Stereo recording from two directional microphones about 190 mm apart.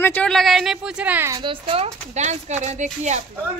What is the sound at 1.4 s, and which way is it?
Speech, 25° right (ahead or behind).